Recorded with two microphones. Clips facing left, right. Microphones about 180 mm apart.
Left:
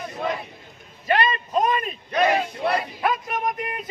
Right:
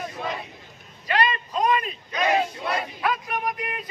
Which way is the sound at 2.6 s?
30° left (ahead or behind).